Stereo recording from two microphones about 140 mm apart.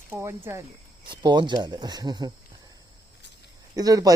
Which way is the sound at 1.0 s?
35° right (ahead or behind).